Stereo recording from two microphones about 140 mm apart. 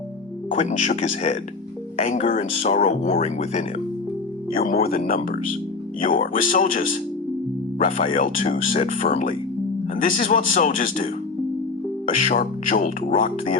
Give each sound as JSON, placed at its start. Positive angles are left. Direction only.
{"t": 0.5, "sound": "speech", "side_deg": 55}
{"t": 4.5, "sound": "speech", "side_deg": 90}
{"t": 6.0, "sound": "speech", "side_deg": 75}